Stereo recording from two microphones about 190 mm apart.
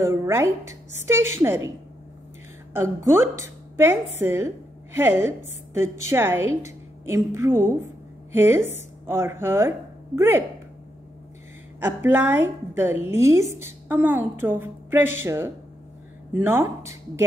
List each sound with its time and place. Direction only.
0.0 s a woman's voice: 15° right (ahead or behind)
2.7 s a woman's voice: 15° right (ahead or behind)
11.8 s a woman's voice: 10° right (ahead or behind)